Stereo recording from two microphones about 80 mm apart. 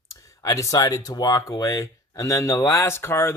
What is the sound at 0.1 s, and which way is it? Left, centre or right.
Speech, left.